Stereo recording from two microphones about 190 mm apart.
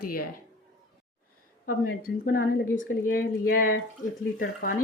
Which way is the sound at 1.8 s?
50° left (ahead or behind).